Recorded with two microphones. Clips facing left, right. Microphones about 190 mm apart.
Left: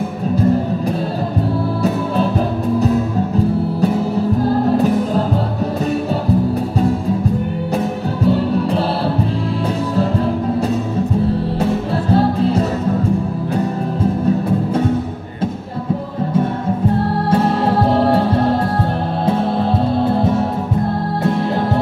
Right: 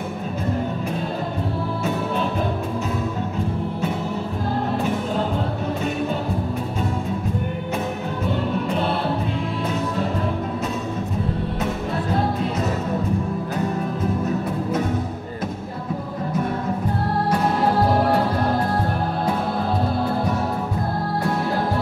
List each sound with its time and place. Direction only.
8.3 s music: 35° left (ahead or behind)
11.6 s music: 30° left (ahead or behind)
17.8 s music: 25° left (ahead or behind)